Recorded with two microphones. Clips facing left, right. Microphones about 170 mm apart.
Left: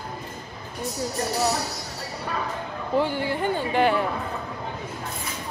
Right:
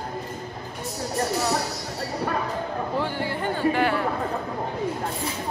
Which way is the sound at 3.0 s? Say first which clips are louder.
Left 7 dB; 15° left (ahead or behind).